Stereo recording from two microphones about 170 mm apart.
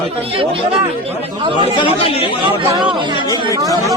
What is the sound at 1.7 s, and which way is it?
Speech, 30° left (ahead or behind).